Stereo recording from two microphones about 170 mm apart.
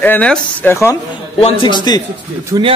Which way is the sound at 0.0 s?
10° left (ahead or behind).